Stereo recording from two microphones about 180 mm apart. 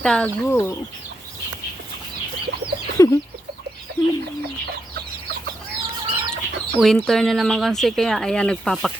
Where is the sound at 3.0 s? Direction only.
20° left (ahead or behind).